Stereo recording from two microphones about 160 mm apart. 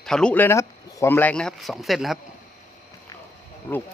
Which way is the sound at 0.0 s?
5° left (ahead or behind).